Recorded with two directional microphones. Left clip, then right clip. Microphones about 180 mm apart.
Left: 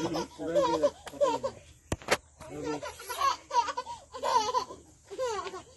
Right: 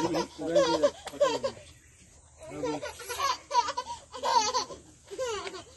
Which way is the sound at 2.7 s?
20° left (ahead or behind).